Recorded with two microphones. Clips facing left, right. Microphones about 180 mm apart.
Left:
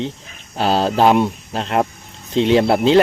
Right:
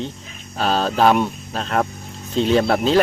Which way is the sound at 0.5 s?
30° left (ahead or behind).